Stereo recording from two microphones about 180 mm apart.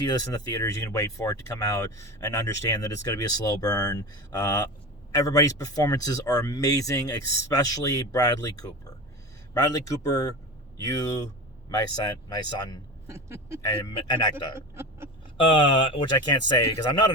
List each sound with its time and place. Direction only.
0.0 s speech: 20° left (ahead or behind)
13.1 s speech: 15° right (ahead or behind)
13.6 s speech: 20° left (ahead or behind)
14.8 s a sound: 15° right (ahead or behind)
15.5 s speech: 30° left (ahead or behind)